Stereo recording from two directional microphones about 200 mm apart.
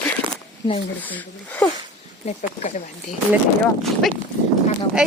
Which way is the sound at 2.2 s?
35° left (ahead or behind).